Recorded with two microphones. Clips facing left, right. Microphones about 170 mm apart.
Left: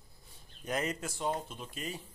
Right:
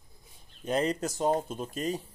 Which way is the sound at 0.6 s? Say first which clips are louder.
Right 7 dB; 30° right (ahead or behind).